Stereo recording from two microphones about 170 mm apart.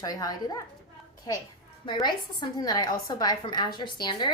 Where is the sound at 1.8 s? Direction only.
25° left (ahead or behind).